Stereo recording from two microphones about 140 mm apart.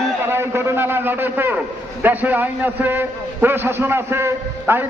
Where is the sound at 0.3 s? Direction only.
15° right (ahead or behind).